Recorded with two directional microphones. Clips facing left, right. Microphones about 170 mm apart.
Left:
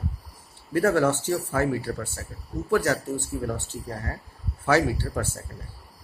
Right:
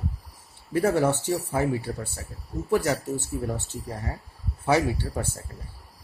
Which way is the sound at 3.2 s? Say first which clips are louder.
Even; centre (ahead or behind).